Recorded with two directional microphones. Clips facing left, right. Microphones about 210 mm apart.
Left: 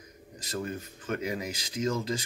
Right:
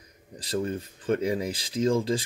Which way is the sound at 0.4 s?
30° right (ahead or behind).